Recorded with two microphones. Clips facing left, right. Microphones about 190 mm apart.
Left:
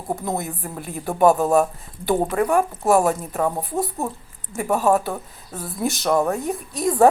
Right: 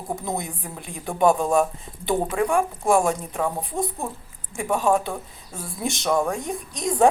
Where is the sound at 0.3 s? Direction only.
5° left (ahead or behind).